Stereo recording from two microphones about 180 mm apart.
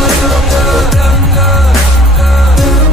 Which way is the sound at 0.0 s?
Centre (ahead or behind).